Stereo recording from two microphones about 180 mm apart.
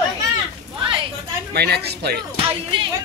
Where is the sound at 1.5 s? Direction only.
65° right (ahead or behind).